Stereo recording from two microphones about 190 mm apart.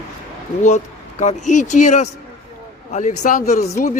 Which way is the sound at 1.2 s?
40° left (ahead or behind).